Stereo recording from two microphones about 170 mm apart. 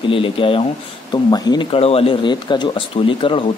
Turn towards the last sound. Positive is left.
turn(degrees=30)  # may be behind; listen again after turning